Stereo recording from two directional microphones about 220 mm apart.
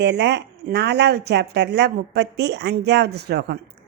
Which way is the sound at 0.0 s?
50° right (ahead or behind).